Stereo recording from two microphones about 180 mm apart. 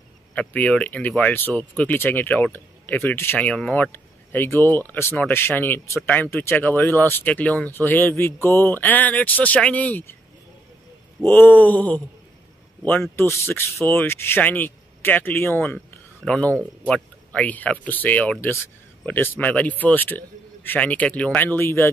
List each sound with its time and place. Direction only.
0.3 s speech: 10° left (ahead or behind)
11.2 s speech: 10° left (ahead or behind)